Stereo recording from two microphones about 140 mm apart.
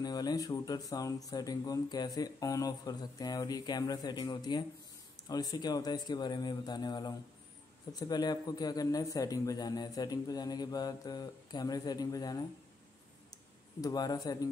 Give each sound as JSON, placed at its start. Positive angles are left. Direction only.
{"t": 0.0, "sound": "speech", "side_deg": 30}
{"t": 13.7, "sound": "speech", "side_deg": 30}